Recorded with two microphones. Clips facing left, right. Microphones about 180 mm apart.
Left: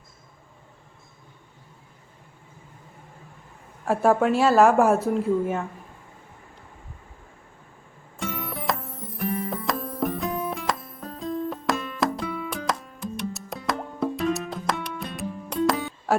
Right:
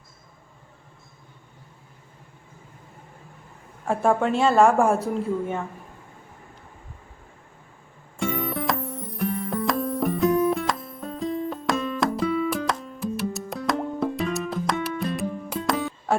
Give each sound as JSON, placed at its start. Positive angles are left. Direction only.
{"t": 3.8, "sound": "a woman's voice", "side_deg": 5}
{"t": 8.2, "sound": "music", "side_deg": 0}